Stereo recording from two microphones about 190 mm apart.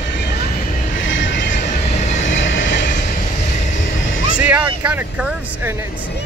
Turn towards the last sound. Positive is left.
turn(degrees=-10)  # may be behind; listen again after turning